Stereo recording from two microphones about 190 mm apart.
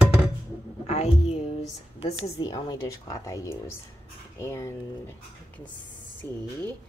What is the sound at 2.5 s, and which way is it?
Speech, 20° left (ahead or behind).